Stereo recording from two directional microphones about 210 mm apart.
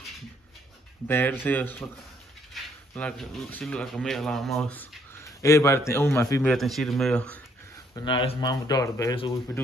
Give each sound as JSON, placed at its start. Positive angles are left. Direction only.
{"t": 1.0, "sound": "speech", "side_deg": 10}
{"t": 2.9, "sound": "speech", "side_deg": 5}
{"t": 6.4, "sound": "speech", "side_deg": 0}
{"t": 7.9, "sound": "speech", "side_deg": 20}